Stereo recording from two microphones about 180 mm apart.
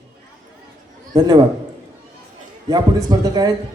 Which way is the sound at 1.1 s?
20° right (ahead or behind).